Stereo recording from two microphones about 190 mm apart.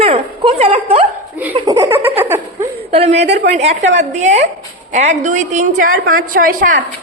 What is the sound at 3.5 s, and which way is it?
A woman's voice, 40° right (ahead or behind).